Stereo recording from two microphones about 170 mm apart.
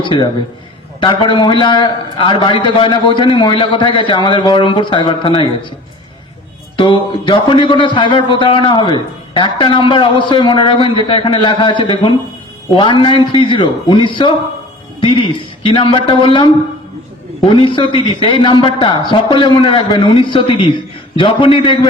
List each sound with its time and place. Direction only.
0.0 s a man's voice: 25° left (ahead or behind)
6.7 s a man's voice: 30° left (ahead or behind)